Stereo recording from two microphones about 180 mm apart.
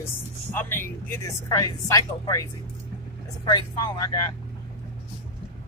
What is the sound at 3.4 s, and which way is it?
Speech, 25° left (ahead or behind).